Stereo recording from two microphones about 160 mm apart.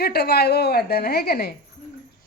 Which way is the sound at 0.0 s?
80° left.